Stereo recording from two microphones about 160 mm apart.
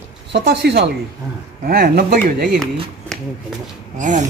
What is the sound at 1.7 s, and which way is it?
Speech, 70° right (ahead or behind).